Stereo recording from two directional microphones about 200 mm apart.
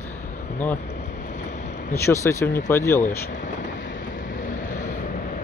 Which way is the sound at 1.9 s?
15° left (ahead or behind).